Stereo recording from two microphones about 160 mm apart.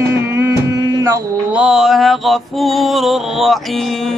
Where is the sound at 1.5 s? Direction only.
5° right (ahead or behind).